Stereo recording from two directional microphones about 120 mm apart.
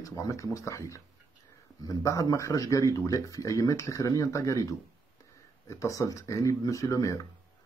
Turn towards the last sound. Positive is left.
turn(degrees=25)  # may be behind; listen again after turning